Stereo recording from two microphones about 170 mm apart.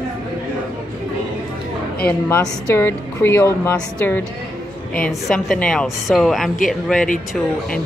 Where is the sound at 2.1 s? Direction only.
15° left (ahead or behind).